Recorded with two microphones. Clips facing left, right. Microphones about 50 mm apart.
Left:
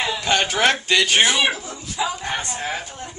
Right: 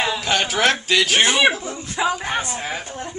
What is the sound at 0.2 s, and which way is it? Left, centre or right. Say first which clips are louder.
A man's voice: left 3 dB; centre.